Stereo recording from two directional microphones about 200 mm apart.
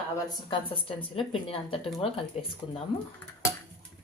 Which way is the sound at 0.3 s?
25° left (ahead or behind).